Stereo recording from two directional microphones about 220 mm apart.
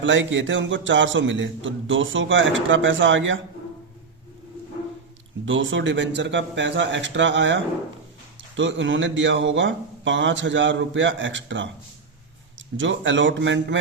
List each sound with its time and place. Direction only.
0.0 s a man's voice: 55° right (ahead or behind)
5.5 s a man's voice: 55° right (ahead or behind)